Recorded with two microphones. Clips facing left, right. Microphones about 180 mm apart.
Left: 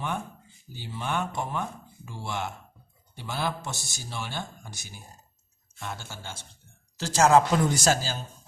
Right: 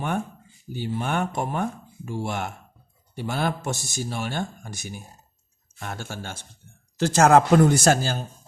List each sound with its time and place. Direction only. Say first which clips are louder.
0.7 s a man's voice: right 5 dB; 55° right (ahead or behind)